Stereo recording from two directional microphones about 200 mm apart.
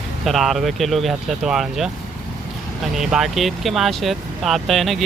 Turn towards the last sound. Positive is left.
turn(degrees=0)  # may be behind; listen again after turning